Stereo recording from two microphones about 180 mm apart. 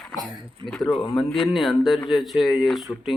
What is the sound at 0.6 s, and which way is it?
Speech, 25° right (ahead or behind).